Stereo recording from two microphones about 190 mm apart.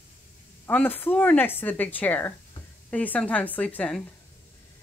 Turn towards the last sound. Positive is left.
turn(degrees=5)  # may be behind; listen again after turning